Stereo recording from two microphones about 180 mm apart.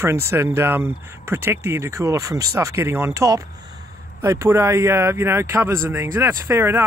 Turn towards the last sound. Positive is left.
turn(degrees=-15)  # may be behind; listen again after turning